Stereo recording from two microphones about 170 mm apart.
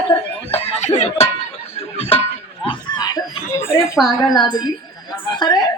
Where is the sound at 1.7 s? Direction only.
35° left (ahead or behind).